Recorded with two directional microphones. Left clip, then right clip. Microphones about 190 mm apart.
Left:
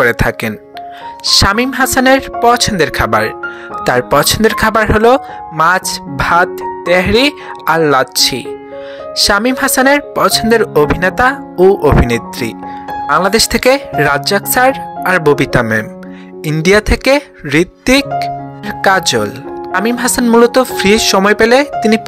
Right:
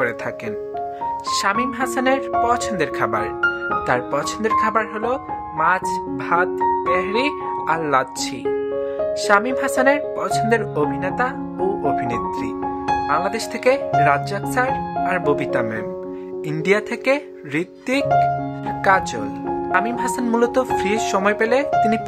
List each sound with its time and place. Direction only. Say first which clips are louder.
0.0 s speech: left 11 dB; 40° left (ahead or behind)